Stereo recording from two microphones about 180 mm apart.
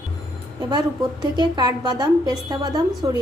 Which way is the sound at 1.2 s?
25° right (ahead or behind).